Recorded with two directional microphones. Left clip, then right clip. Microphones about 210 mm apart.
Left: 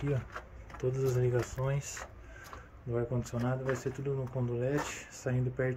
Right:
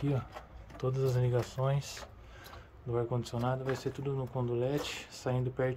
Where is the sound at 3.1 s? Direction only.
15° right (ahead or behind).